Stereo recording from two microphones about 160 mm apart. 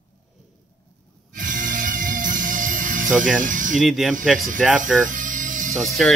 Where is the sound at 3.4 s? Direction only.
55° right (ahead or behind).